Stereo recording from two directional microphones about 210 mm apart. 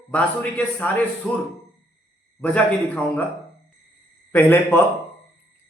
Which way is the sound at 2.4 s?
5° left (ahead or behind).